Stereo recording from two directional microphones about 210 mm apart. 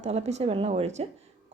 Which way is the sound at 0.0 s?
30° right (ahead or behind).